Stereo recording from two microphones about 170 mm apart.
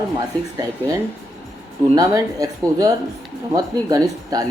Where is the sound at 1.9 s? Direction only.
20° right (ahead or behind).